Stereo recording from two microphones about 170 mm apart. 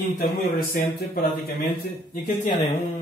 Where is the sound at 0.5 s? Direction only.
60° left (ahead or behind).